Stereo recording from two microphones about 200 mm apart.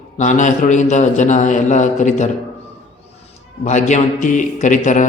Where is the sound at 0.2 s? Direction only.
40° left (ahead or behind).